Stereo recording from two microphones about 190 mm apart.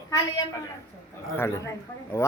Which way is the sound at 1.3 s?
15° left (ahead or behind).